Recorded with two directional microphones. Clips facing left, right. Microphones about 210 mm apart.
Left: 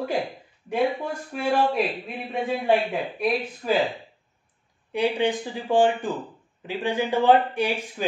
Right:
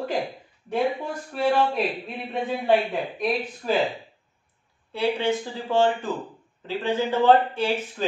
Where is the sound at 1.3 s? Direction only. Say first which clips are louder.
Right 7 dB; 5° left (ahead or behind).